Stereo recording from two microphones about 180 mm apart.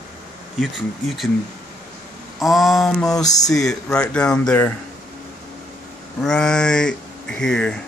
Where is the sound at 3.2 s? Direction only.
20° left (ahead or behind).